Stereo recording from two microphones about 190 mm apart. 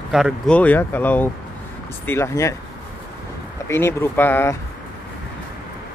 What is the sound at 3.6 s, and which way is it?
Speech, 15° left (ahead or behind).